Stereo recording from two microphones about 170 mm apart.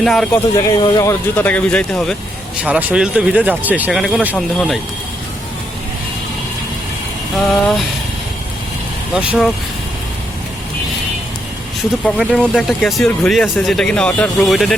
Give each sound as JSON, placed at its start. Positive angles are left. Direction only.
{"t": 0.0, "sound": "speech", "side_deg": 0}
{"t": 0.5, "sound": "speech", "side_deg": 20}
{"t": 1.4, "sound": "speech", "side_deg": 10}
{"t": 7.3, "sound": "speech", "side_deg": 0}
{"t": 9.1, "sound": "speech", "side_deg": -5}
{"t": 12.0, "sound": "speech", "side_deg": 0}